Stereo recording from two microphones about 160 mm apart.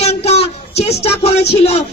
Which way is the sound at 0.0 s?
40° left (ahead or behind).